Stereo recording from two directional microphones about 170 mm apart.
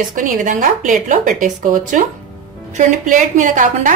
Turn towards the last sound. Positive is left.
turn(degrees=-50)  # may be behind; listen again after turning